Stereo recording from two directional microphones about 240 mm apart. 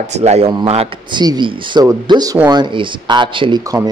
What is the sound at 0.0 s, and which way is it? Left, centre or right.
Speech, right.